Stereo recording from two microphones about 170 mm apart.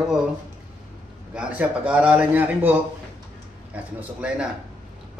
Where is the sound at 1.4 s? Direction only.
10° right (ahead or behind).